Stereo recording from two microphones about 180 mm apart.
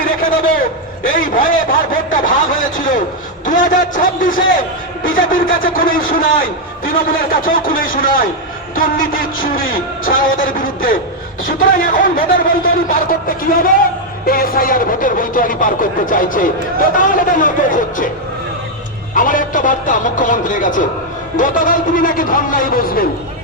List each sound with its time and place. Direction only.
0.2 s a sound: 50° left (ahead or behind)
3.4 s a man's voice: 45° left (ahead or behind)
19.1 s speech: 50° left (ahead or behind)